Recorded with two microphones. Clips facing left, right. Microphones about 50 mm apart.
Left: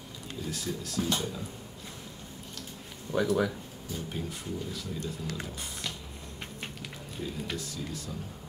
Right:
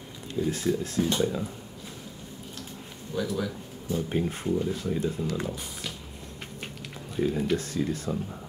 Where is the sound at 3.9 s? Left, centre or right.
Right.